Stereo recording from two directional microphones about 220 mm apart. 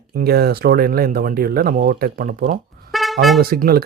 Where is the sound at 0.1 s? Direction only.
45° right (ahead or behind).